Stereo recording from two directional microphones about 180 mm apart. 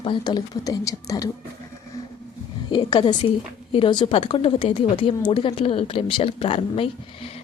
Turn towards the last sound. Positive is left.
turn(degrees=30)  # may be behind; listen again after turning